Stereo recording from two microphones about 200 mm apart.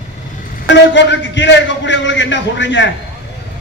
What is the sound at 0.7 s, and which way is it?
A man's voice, 60° left (ahead or behind).